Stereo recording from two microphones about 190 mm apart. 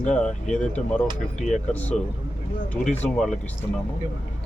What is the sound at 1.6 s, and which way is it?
Speech, 10° left (ahead or behind).